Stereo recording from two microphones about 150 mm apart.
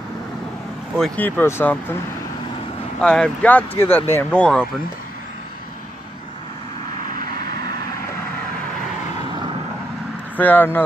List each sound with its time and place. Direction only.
0.9 s speech: centre (ahead or behind)
1.2 s speech: 15° left (ahead or behind)
3.0 s speech: 5° left (ahead or behind)
9.3 s vehicle: 30° right (ahead or behind)
10.3 s speech: 10° left (ahead or behind)